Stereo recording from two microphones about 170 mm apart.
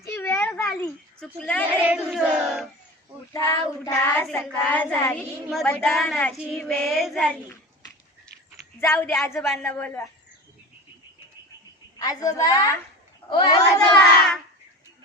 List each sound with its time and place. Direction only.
0.0 s a sound: 15° left (ahead or behind)
1.8 s child singing: 5° right (ahead or behind)
3.3 s a child's voice: 20° left (ahead or behind)
3.9 s child singing: 5° left (ahead or behind)
5.6 s a woman's voice: 10° left (ahead or behind)
6.4 s child singing: centre (ahead or behind)
8.9 s a woman's voice: 15° left (ahead or behind)
11.9 s a child's voice: 20° left (ahead or behind)